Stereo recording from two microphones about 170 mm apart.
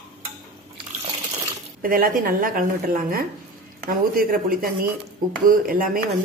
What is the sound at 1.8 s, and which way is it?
Speech, 55° right (ahead or behind).